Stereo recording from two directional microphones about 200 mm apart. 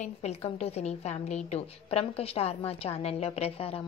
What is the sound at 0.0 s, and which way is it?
A woman's voice, 35° left (ahead or behind).